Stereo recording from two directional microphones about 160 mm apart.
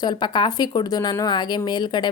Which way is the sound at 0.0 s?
25° left (ahead or behind).